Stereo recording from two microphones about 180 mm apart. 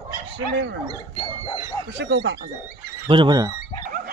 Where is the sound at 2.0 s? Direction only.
85° right.